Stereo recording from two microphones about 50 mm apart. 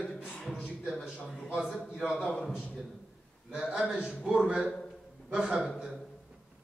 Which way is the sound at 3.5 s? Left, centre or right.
Centre.